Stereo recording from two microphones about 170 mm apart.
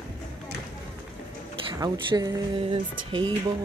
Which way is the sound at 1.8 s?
20° right (ahead or behind).